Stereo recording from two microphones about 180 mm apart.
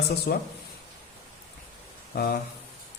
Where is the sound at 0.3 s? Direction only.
65° left (ahead or behind).